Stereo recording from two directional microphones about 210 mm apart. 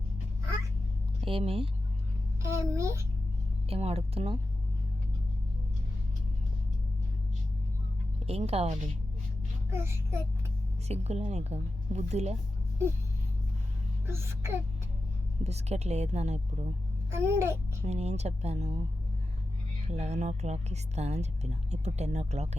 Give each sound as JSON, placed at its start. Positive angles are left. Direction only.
{"t": 1.2, "sound": "speech", "side_deg": -25}
{"t": 2.4, "sound": "a child's voice", "side_deg": -15}
{"t": 3.7, "sound": "speech", "side_deg": -30}
{"t": 8.3, "sound": "a woman's voice", "side_deg": -30}
{"t": 9.6, "sound": "a child's voice", "side_deg": -10}
{"t": 10.8, "sound": "a woman's voice", "side_deg": -30}
{"t": 14.1, "sound": "a child's voice", "side_deg": -10}
{"t": 15.4, "sound": "a woman's voice", "side_deg": -30}
{"t": 17.2, "sound": "a child's voice", "side_deg": -10}
{"t": 17.8, "sound": "a woman's voice", "side_deg": -30}
{"t": 19.9, "sound": "a woman's voice", "side_deg": -30}